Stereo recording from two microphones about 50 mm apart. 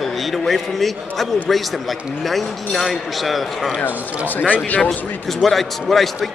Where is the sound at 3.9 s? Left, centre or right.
Right.